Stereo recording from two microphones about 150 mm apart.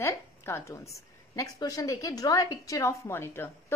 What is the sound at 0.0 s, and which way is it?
A woman's voice, 20° left (ahead or behind).